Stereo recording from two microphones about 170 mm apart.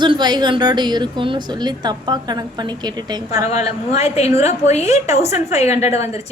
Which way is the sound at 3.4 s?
40° left (ahead or behind).